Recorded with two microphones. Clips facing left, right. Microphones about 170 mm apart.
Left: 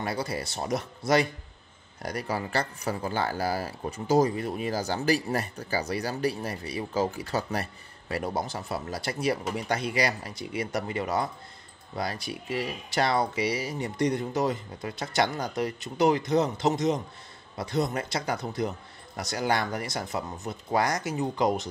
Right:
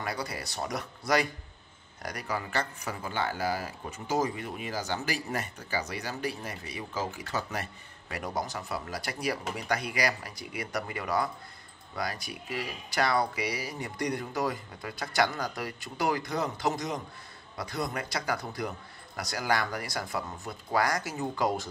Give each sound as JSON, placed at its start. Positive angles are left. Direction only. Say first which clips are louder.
{"t": 0.0, "sound": "speech", "louder": "left 4 dB", "side_deg": 30}